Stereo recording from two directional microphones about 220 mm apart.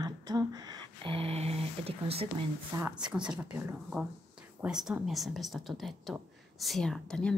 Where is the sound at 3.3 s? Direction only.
5° right (ahead or behind).